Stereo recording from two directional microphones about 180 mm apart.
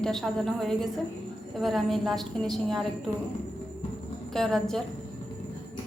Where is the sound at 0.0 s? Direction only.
5° left (ahead or behind).